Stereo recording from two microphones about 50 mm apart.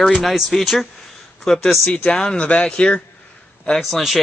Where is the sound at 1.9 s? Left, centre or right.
Centre.